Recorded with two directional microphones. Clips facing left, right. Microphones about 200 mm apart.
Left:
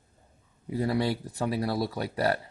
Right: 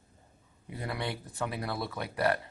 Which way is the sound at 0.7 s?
35° left (ahead or behind).